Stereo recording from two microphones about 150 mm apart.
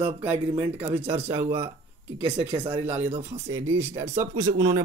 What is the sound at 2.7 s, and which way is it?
Speech, 15° right (ahead or behind).